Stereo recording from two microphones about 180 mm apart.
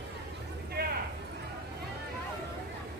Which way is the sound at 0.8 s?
60° right (ahead or behind).